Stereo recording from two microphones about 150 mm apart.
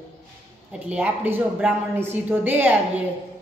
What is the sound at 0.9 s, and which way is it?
A woman's voice, 10° right (ahead or behind).